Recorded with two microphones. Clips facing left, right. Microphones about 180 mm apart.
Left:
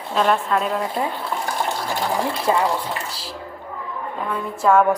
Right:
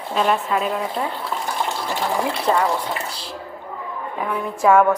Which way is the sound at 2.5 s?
10° left (ahead or behind).